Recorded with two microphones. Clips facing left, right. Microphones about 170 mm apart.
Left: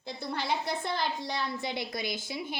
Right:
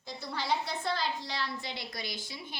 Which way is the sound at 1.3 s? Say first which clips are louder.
Left 4 dB; 50° left (ahead or behind).